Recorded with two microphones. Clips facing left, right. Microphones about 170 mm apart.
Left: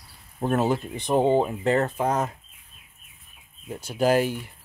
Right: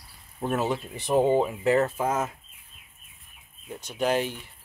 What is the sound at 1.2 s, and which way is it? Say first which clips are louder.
Speech: left 1 dB; 25° left (ahead or behind).